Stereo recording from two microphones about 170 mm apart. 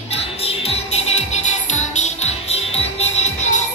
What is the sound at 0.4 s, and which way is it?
Music, 35° left (ahead or behind).